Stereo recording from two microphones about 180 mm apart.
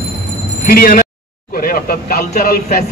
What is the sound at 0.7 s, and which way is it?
A man's voice, 55° left (ahead or behind).